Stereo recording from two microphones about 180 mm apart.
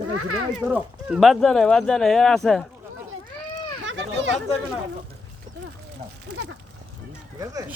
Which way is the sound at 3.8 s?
85° right.